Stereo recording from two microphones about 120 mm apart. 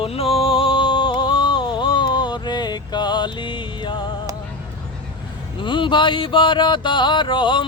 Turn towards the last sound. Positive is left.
turn(degrees=40)  # may be behind; listen again after turning